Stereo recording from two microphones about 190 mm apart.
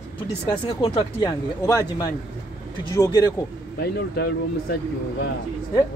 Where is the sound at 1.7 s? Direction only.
15° left (ahead or behind).